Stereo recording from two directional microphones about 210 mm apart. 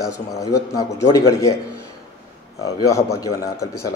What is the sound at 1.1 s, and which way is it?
Speech, 15° left (ahead or behind).